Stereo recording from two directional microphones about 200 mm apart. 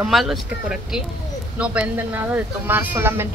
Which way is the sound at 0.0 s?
Centre (ahead or behind).